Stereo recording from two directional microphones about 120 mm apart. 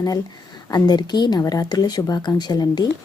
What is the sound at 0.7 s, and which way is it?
Speech, 35° left (ahead or behind).